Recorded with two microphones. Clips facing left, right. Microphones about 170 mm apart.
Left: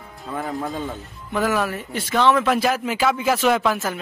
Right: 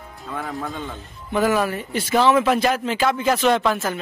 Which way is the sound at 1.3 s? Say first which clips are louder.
Right 2 dB; centre (ahead or behind).